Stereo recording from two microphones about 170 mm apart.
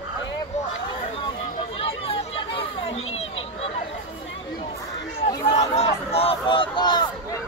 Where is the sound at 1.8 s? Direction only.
35° left (ahead or behind).